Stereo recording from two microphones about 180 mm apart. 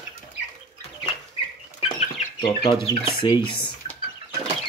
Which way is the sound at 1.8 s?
40° left (ahead or behind).